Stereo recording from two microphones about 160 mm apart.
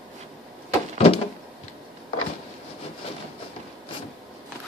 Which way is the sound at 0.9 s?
35° left (ahead or behind).